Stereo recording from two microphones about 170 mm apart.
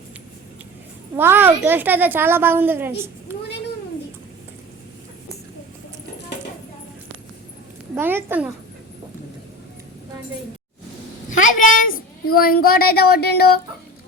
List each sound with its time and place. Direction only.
1.1 s a woman's voice: 15° right (ahead or behind)
7.9 s a woman's voice: 10° right (ahead or behind)
11.3 s a child's voice: 50° left (ahead or behind); by 13.5 s 70° left (ahead or behind)